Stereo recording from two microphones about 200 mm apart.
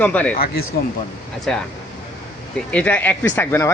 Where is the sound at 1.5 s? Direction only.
5° left (ahead or behind).